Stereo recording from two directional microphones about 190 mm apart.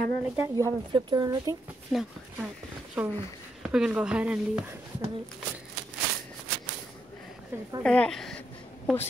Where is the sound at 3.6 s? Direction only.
5° right (ahead or behind).